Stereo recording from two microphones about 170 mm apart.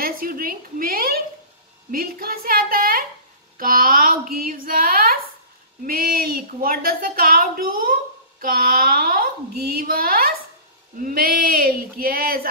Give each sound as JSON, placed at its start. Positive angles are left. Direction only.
{"t": 0.0, "sound": "a woman's voice", "side_deg": -55}